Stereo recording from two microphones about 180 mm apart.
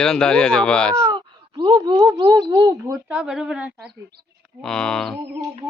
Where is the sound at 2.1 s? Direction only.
20° right (ahead or behind).